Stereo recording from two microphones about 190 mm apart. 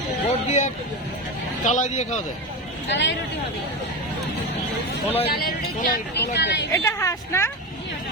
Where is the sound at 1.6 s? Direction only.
40° left (ahead or behind).